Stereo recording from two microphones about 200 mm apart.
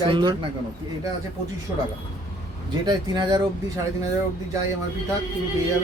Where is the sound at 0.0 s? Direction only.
20° right (ahead or behind).